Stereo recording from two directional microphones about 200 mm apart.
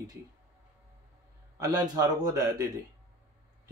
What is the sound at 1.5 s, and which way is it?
Speech, 20° right (ahead or behind).